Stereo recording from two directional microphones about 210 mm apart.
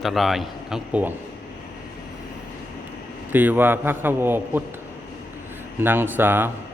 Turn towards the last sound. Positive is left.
turn(degrees=-10)  # may be behind; listen again after turning